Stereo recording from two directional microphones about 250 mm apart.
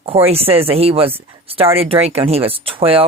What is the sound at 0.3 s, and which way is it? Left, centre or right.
Speech, right.